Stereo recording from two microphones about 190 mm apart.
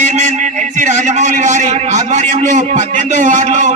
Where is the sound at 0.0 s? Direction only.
40° right (ahead or behind).